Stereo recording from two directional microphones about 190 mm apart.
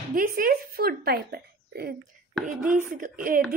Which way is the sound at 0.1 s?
50° right (ahead or behind).